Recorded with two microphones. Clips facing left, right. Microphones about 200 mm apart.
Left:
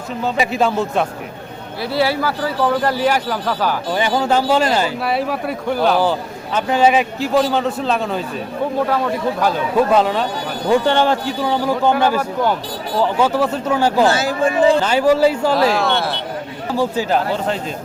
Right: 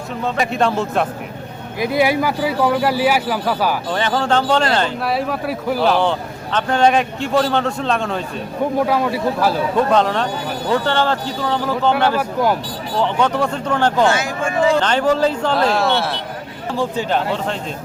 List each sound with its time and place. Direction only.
0.2 s speech: centre (ahead or behind)
1.8 s speech: 15° right (ahead or behind)
3.9 s speech: 10° left (ahead or behind)
8.9 s speech: 5° right (ahead or behind)
9.7 s speech: 5° left (ahead or behind)
10.7 s a man's voice: 15° left (ahead or behind)
14.1 s speech: 35° left (ahead or behind)
14.8 s a man's voice: 10° left (ahead or behind)